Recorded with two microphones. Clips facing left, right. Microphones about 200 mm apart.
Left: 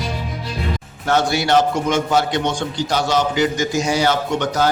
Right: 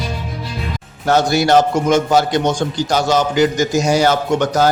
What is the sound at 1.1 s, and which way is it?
A man's voice, 40° right (ahead or behind).